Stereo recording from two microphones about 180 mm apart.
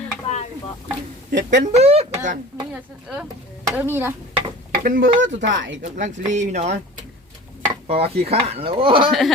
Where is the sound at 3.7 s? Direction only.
10° right (ahead or behind).